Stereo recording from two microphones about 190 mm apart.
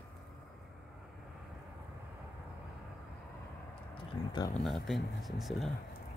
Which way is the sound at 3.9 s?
25° left (ahead or behind).